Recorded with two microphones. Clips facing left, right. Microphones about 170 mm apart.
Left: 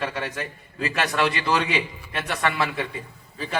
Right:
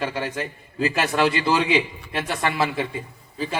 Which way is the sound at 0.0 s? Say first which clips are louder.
Right 2 dB; 30° right (ahead or behind).